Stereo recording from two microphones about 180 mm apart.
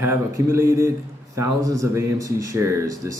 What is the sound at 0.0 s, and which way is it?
Speech, 15° right (ahead or behind).